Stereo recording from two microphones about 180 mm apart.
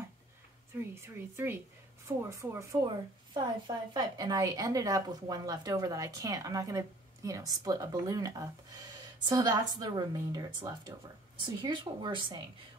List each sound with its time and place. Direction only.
0.7 s a woman's voice: 15° right (ahead or behind)